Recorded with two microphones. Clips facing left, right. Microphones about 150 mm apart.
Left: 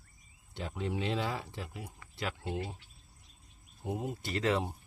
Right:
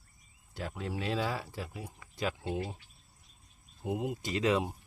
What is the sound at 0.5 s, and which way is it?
Speech, 5° right (ahead or behind).